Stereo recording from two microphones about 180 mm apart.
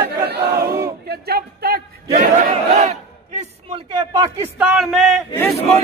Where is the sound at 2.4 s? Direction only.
40° right (ahead or behind).